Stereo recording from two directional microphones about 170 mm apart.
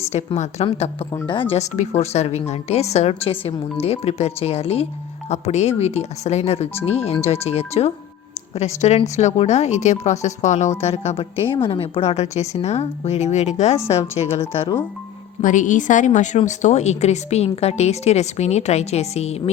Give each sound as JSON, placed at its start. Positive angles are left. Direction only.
{"t": 0.1, "sound": "speech", "side_deg": 40}
{"t": 15.4, "sound": "a woman's voice", "side_deg": 50}